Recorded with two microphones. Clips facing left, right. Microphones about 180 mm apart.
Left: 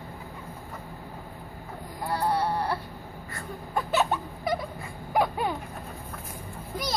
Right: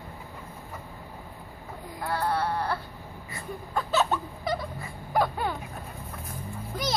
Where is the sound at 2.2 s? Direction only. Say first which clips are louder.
Left 1 dB; 15° left (ahead or behind).